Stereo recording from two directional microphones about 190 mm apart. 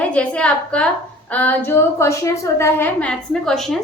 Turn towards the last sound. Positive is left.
turn(degrees=0)  # may be behind; listen again after turning